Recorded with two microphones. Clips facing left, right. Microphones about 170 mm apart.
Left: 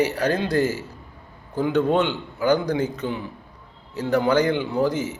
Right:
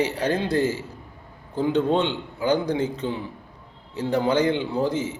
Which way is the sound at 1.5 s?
30° right (ahead or behind).